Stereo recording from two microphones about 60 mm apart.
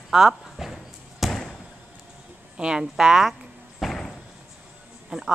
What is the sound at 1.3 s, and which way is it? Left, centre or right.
Basketball bounce, centre.